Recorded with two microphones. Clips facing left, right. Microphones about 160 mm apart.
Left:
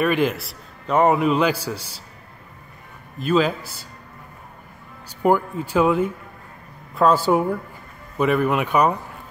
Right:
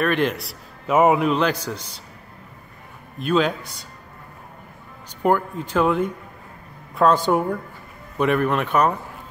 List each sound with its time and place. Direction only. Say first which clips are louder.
0.0 s a man's voice: left 1 dB; 5° left (ahead or behind)
3.2 s a man's voice: left 1 dB; centre (ahead or behind)
5.2 s a man's voice: left 1 dB; 5° left (ahead or behind)